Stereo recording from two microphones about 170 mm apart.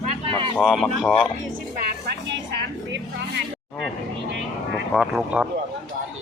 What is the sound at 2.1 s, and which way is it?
Music, 80° right.